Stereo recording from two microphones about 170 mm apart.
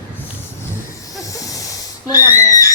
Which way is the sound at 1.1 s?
20° left (ahead or behind).